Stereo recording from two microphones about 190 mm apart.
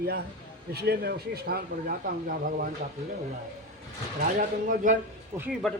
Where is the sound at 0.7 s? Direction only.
55° right (ahead or behind).